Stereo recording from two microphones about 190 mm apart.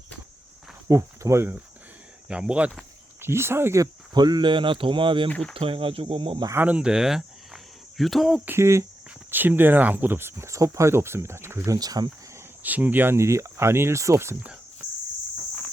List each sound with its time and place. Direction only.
0.9 s cricket: 15° right (ahead or behind)
2.2 s speech: 5° right (ahead or behind); by 5.3 s 25° right (ahead or behind)
5.3 s speech: 5° left (ahead or behind)
5.5 s speech: 30° right (ahead or behind)
6.5 s speech: 10° right (ahead or behind)
8.4 s speech: 15° right (ahead or behind)
12.6 s speech: 10° right (ahead or behind)